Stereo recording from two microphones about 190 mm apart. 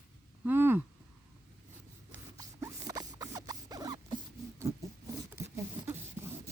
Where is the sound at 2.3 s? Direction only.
15° right (ahead or behind).